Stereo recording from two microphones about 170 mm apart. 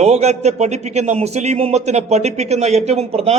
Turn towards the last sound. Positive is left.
turn(degrees=-35)  # may be behind; listen again after turning